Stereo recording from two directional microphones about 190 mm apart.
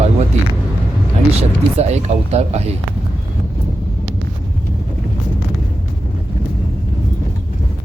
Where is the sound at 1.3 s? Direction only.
35° right (ahead or behind).